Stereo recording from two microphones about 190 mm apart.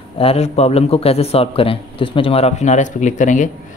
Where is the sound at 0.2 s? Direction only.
30° left (ahead or behind).